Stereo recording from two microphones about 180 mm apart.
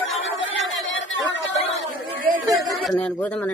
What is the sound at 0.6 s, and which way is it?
Chatter, 90° left.